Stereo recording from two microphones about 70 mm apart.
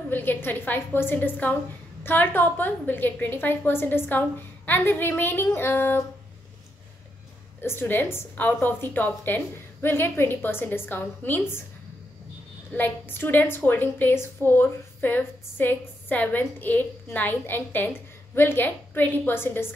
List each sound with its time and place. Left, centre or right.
0.1 s a woman's voice: left
7.6 s a woman's voice: left
12.7 s a woman's voice: left